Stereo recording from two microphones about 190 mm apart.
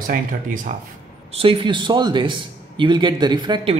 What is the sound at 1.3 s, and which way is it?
A man's voice, 25° right (ahead or behind).